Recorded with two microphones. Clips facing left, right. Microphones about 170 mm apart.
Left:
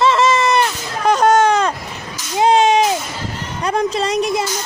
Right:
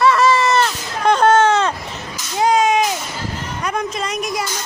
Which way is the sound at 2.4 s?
30° left (ahead or behind).